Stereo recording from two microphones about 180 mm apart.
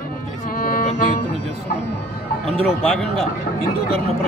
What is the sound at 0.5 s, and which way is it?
Music, 50° left (ahead or behind).